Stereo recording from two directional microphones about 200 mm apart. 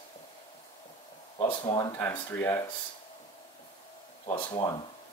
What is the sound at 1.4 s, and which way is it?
Speech, 25° left (ahead or behind).